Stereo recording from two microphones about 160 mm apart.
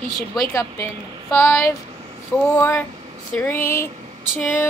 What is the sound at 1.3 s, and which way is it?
Speech, 15° left (ahead or behind).